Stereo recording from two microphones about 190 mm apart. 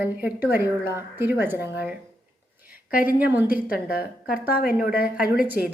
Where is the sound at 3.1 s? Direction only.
10° right (ahead or behind).